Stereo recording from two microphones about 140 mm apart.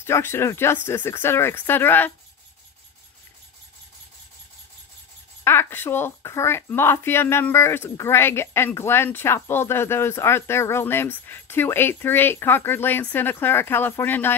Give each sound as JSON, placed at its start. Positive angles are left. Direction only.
{"t": 0.0, "sound": "speech", "side_deg": 15}
{"t": 5.4, "sound": "speech", "side_deg": 15}